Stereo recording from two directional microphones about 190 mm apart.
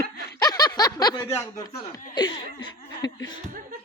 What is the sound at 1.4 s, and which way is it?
Speech, 20° left (ahead or behind).